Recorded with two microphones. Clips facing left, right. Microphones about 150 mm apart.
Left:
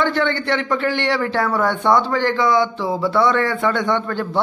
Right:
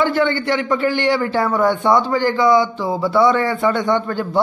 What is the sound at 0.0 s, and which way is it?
A man's voice, 5° right (ahead or behind).